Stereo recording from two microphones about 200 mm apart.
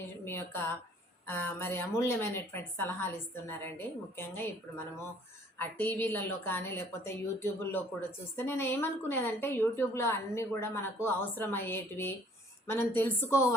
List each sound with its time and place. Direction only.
0.3 s a woman's voice: 10° left (ahead or behind)
5.5 s a woman's voice: 10° left (ahead or behind)